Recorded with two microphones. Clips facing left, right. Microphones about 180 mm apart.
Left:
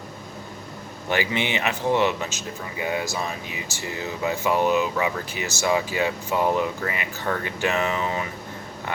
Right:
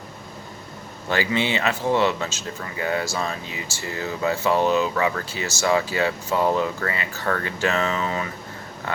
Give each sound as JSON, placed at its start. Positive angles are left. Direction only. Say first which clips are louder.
{"t": 1.1, "sound": "speech", "louder": "right 2 dB", "side_deg": 15}